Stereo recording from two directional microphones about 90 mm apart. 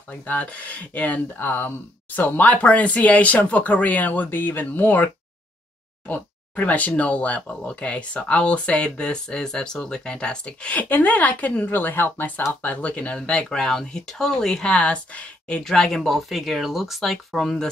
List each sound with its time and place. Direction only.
0.1 s speech: 15° left (ahead or behind)